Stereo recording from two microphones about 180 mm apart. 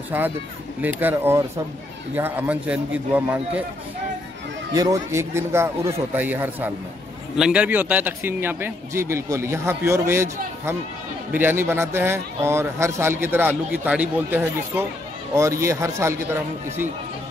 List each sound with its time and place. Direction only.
0.1 s speech: 10° right (ahead or behind)
4.7 s speech: 20° right (ahead or behind)